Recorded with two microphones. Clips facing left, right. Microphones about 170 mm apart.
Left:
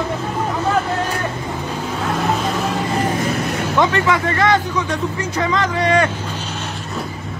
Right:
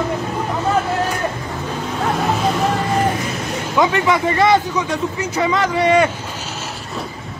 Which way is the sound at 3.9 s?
15° right (ahead or behind).